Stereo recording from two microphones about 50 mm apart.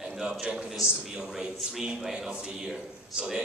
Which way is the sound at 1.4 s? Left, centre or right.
Centre.